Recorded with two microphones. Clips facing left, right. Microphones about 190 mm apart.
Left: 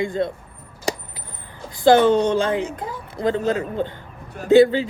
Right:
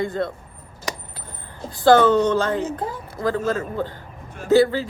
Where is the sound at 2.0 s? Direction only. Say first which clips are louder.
Even; 20° left (ahead or behind).